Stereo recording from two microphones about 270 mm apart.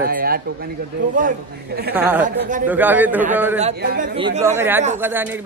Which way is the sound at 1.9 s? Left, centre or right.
Centre.